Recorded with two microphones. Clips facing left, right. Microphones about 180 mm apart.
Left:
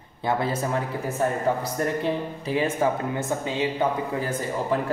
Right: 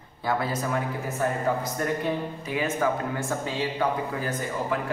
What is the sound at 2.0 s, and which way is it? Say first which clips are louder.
Speech: left 2 dB; 30° left (ahead or behind).